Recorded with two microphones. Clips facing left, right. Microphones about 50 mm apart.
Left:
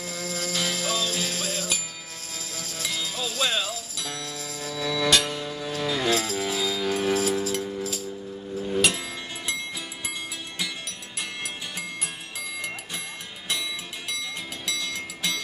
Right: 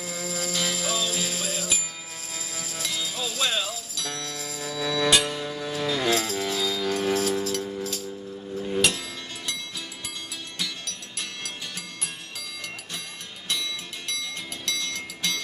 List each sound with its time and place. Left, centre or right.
0.0 s music: centre
8.5 s a sound: centre
10.6 s music: centre